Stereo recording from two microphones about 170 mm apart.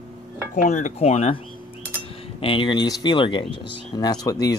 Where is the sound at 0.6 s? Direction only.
45° left (ahead or behind).